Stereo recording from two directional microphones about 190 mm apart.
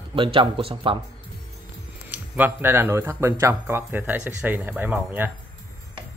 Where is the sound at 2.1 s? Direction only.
10° right (ahead or behind).